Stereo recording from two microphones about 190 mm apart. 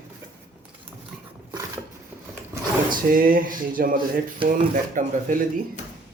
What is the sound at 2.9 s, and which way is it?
Speech, 50° right (ahead or behind).